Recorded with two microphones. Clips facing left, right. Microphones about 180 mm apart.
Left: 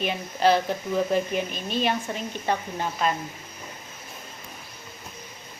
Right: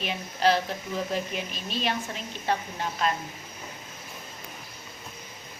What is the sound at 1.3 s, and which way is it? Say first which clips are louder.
Speech: left 6 dB; 50° left (ahead or behind).